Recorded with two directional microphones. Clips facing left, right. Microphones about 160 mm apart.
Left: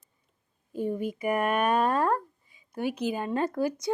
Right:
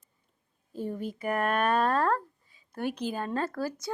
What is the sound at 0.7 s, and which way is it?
Speech, 10° left (ahead or behind).